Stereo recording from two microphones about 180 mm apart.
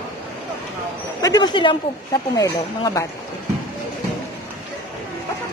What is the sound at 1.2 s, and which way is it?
Speech, 20° left (ahead or behind).